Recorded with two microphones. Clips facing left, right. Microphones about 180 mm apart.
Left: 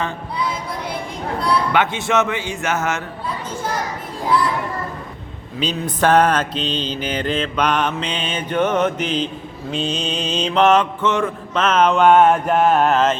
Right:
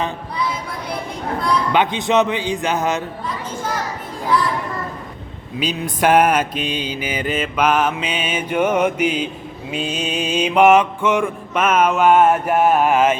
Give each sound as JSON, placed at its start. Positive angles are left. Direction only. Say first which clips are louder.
{"t": 1.7, "sound": "mantra", "louder": "right 2 dB", "side_deg": -15}
{"t": 5.5, "sound": "mantra", "louder": "even", "side_deg": -10}